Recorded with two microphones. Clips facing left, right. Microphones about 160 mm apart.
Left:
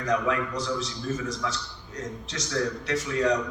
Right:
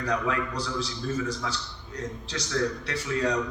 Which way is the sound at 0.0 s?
30° right (ahead or behind).